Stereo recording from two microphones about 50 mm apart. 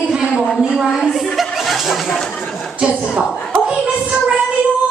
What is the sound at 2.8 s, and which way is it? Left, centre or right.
Speech, centre.